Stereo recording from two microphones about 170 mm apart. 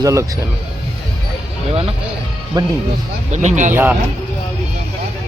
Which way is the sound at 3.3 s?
45° right (ahead or behind).